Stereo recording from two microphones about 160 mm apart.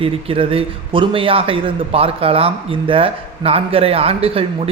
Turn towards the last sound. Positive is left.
turn(degrees=-35)  # may be behind; listen again after turning